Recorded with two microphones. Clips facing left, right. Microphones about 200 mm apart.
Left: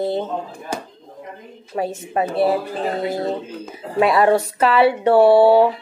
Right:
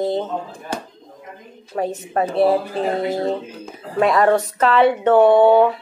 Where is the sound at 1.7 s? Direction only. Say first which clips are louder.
Right 1 dB; 15° left (ahead or behind).